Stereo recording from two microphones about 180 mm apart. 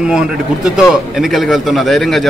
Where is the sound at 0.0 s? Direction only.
5° right (ahead or behind).